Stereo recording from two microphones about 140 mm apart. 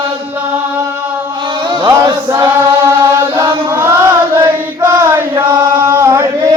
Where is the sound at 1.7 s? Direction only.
30° right (ahead or behind).